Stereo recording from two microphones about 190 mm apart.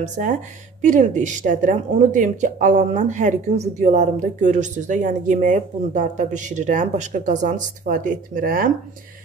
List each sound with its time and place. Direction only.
0.0 s speech: 40° right (ahead or behind)